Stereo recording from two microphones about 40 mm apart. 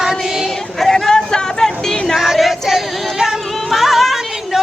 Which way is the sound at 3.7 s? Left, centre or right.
Centre.